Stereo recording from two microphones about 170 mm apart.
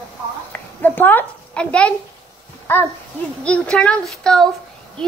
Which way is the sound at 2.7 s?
15° left (ahead or behind).